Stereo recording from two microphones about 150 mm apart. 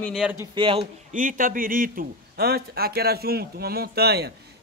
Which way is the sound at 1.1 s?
60° right (ahead or behind).